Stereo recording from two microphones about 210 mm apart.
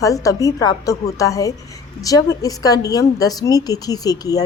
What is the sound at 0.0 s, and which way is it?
A woman's voice, 15° left (ahead or behind).